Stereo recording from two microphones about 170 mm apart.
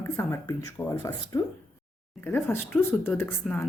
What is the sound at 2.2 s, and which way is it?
Speech, 10° left (ahead or behind).